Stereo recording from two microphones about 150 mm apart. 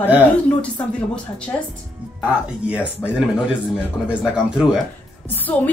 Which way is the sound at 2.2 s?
10° right (ahead or behind).